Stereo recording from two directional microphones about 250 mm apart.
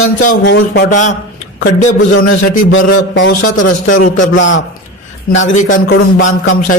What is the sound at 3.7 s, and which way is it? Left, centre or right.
Speech, left.